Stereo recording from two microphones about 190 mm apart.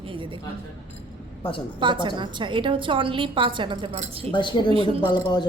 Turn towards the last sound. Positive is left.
turn(degrees=20)  # may be behind; listen again after turning